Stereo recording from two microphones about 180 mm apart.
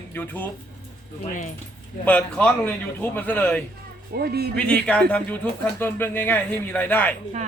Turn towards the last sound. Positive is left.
turn(degrees=10)  # may be behind; listen again after turning